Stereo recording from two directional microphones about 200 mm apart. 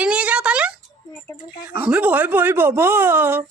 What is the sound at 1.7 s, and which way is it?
Speech, 10° right (ahead or behind).